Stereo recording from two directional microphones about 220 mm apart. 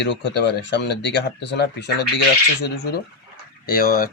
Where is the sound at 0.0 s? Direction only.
50° left (ahead or behind).